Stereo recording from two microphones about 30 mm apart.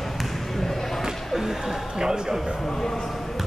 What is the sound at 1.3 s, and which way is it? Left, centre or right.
Speech, centre.